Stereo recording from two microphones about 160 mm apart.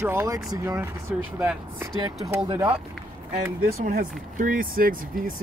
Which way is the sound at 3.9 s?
60° right (ahead or behind).